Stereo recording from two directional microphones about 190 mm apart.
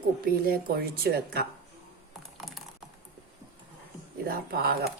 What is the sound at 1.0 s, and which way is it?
Speech, 55° right (ahead or behind).